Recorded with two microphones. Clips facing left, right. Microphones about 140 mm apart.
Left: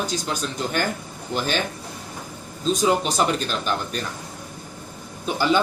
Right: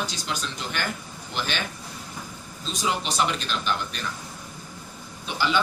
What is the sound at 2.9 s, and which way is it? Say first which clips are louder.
Speech: left 5 dB; 45° left (ahead or behind).